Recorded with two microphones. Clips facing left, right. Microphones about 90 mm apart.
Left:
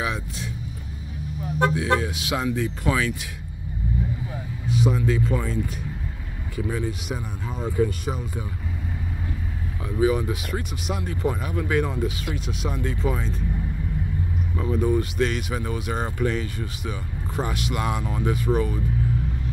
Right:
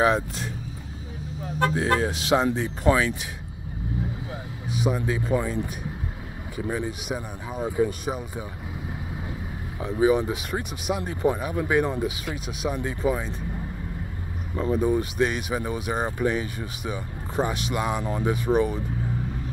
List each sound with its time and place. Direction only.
0.0 s speech: 40° right (ahead or behind)
1.7 s speech: 40° right (ahead or behind)
4.6 s speech: 20° right (ahead or behind)
9.8 s speech: 25° right (ahead or behind)
14.6 s speech: 15° right (ahead or behind)